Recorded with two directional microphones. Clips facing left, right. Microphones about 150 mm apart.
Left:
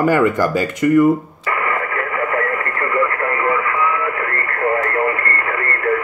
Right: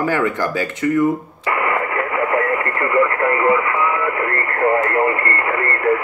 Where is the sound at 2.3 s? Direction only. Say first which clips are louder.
Right 2 dB; 20° right (ahead or behind).